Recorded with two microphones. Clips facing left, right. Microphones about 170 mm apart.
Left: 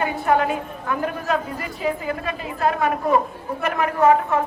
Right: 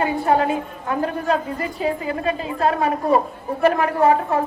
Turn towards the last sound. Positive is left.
turn(degrees=-30)  # may be behind; listen again after turning